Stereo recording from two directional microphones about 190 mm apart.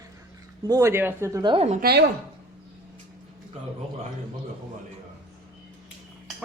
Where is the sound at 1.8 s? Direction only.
55° right (ahead or behind).